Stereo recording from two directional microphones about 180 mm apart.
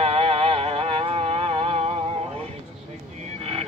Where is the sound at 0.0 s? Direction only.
35° right (ahead or behind).